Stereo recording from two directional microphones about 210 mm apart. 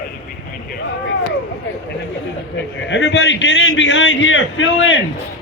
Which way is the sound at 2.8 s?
60° left (ahead or behind).